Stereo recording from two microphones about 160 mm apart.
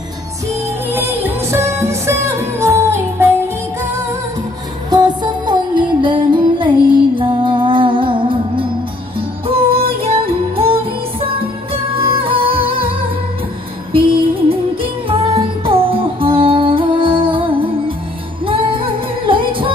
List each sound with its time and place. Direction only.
0.8 s music: 10° right (ahead or behind)
4.8 s music: 25° right (ahead or behind)
13.9 s music: 35° right (ahead or behind)